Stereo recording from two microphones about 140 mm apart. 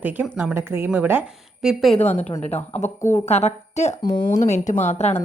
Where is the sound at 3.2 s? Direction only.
50° left (ahead or behind).